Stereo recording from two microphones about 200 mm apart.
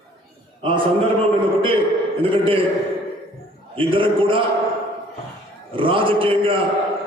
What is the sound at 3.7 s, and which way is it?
Speech, 25° right (ahead or behind).